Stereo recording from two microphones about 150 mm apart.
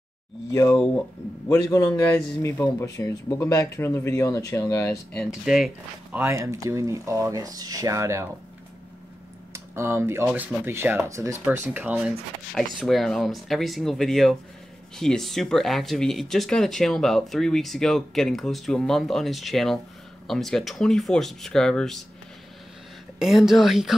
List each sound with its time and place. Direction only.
0.5 s speech: 20° left (ahead or behind)
5.1 s speech: centre (ahead or behind)
6.1 s speech: 15° right (ahead or behind)
9.5 s speech: 15° right (ahead or behind)
12.7 s speech: centre (ahead or behind)
23.1 s speech: 5° right (ahead or behind)